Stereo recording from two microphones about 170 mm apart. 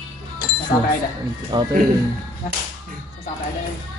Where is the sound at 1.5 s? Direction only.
25° right (ahead or behind).